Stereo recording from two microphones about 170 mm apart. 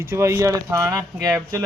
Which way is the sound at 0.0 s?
15° right (ahead or behind).